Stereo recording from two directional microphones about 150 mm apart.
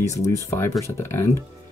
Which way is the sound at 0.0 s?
20° left (ahead or behind).